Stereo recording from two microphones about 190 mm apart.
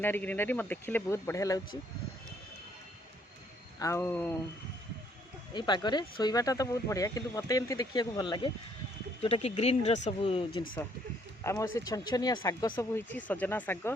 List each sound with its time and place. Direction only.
0.0 s speech: 10° left (ahead or behind)
3.8 s speech: 15° left (ahead or behind)
5.5 s speech: 25° left (ahead or behind)
11.4 s speech: 15° left (ahead or behind)
13.0 s speech: 10° left (ahead or behind)